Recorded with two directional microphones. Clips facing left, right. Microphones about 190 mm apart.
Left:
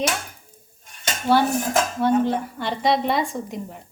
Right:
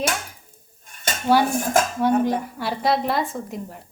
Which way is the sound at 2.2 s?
10° right (ahead or behind).